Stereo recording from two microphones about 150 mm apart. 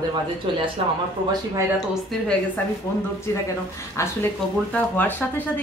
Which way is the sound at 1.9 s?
Centre (ahead or behind).